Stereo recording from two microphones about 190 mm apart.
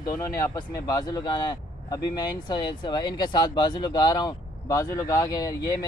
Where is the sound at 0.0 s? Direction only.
15° left (ahead or behind).